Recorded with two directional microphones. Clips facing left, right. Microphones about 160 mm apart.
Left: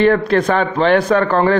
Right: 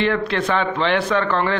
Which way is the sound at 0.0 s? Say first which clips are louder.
Left 7 dB; 45° left (ahead or behind).